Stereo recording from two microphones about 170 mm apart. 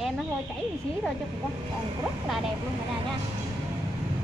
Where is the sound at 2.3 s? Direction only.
Centre (ahead or behind).